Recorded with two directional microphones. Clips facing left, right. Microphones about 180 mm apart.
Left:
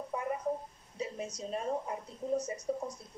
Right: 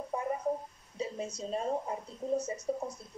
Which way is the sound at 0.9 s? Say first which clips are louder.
Right 2 dB; 30° right (ahead or behind).